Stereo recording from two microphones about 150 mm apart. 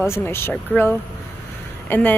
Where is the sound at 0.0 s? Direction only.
15° left (ahead or behind).